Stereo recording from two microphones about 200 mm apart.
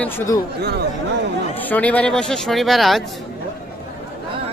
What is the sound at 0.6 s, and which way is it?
Speech, 55° right (ahead or behind).